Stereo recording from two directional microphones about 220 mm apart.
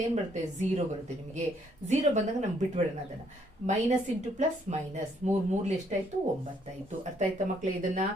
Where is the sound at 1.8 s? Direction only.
35° right (ahead or behind).